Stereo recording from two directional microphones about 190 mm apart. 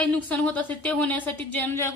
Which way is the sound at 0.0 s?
5° left (ahead or behind).